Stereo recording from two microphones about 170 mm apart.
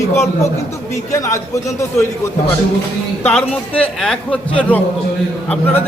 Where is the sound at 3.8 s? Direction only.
5° left (ahead or behind).